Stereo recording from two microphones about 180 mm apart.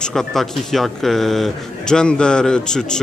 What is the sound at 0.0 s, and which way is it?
Speech, centre (ahead or behind).